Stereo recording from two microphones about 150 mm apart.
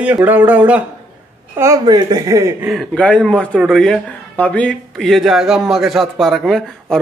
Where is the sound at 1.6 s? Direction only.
25° right (ahead or behind).